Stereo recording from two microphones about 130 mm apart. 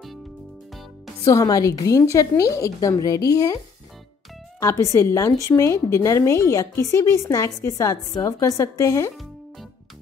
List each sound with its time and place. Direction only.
1.2 s a woman's voice: 25° left (ahead or behind)
4.6 s a woman's voice: 25° left (ahead or behind)